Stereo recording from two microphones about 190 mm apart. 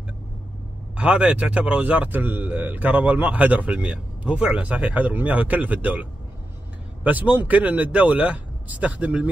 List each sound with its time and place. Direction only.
0.9 s speech: 5° right (ahead or behind)